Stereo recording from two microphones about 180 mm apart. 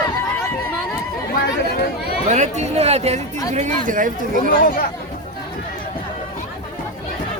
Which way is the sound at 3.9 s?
50° right (ahead or behind).